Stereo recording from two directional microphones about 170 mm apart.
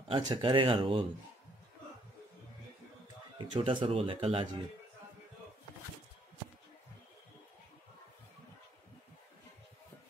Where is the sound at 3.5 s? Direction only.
30° right (ahead or behind).